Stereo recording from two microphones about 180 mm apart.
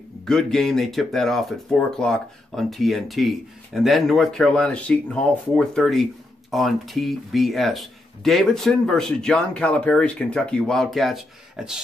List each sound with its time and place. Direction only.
0.2 s speech: 5° left (ahead or behind)